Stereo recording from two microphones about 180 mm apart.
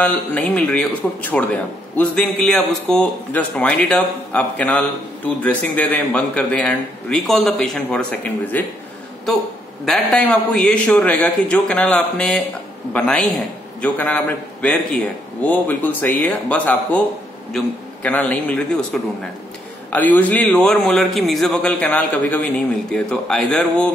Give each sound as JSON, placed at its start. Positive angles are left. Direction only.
{"t": 0.0, "sound": "a man's voice", "side_deg": 10}
{"t": 9.8, "sound": "a man's voice", "side_deg": 5}
{"t": 18.0, "sound": "a man's voice", "side_deg": 10}
{"t": 19.9, "sound": "a man's voice", "side_deg": 10}